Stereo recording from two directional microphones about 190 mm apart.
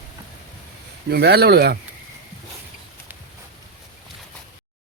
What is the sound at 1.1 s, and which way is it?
Speech, 55° right (ahead or behind).